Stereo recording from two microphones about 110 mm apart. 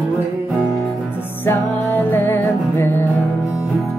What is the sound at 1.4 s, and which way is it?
Music, 20° left (ahead or behind).